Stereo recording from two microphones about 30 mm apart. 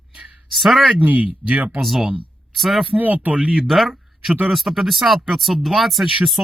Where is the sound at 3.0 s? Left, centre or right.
Right.